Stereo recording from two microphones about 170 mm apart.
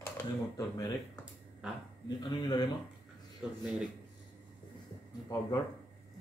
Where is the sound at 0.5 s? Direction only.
20° left (ahead or behind).